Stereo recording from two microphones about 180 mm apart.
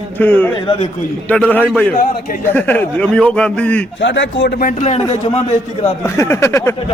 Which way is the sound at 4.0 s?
90° left.